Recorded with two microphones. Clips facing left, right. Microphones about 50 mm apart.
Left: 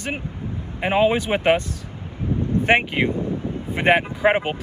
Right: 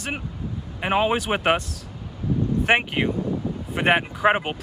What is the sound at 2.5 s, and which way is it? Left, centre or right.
Speech, left.